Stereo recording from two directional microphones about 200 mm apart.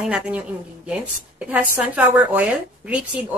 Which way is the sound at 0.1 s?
5° right (ahead or behind).